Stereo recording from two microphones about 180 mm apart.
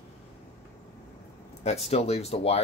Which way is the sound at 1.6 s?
35° left (ahead or behind).